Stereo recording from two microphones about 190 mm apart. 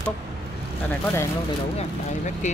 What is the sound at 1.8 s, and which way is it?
Speech, 40° left (ahead or behind).